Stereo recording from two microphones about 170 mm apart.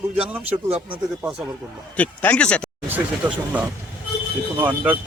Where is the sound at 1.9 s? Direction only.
10° left (ahead or behind).